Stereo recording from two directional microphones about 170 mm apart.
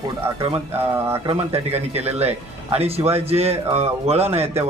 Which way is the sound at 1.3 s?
35° right (ahead or behind).